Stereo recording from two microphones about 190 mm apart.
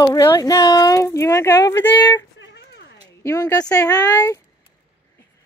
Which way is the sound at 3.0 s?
15° left (ahead or behind).